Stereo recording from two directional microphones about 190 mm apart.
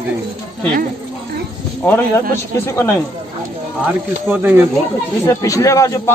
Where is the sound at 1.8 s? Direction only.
10° left (ahead or behind).